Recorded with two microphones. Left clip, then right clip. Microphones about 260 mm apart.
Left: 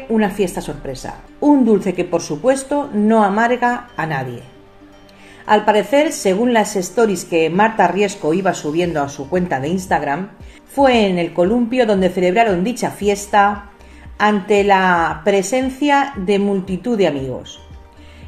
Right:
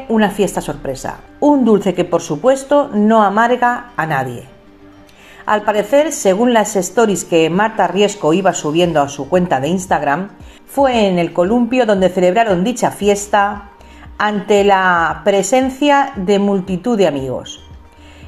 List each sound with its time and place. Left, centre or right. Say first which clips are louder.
0.1 s speech: right 3 dB; right
5.4 s speech: left 1 dB; right
14.2 s speech: right 1 dB; right